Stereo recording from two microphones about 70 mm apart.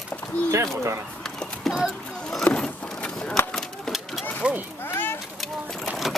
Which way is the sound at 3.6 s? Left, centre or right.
Centre.